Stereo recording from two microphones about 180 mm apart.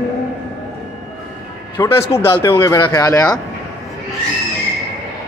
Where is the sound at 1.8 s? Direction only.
15° left (ahead or behind).